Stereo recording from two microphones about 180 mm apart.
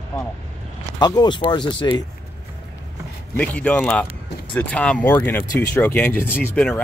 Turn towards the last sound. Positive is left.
turn(degrees=10)  # may be behind; listen again after turning